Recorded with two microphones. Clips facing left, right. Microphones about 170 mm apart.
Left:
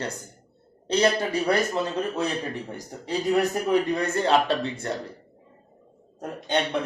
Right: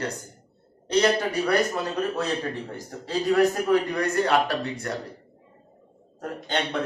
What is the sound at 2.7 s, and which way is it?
A man's voice, 20° left (ahead or behind).